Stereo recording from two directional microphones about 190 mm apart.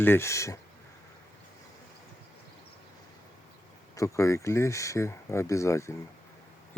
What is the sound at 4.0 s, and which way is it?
Speech, 15° left (ahead or behind).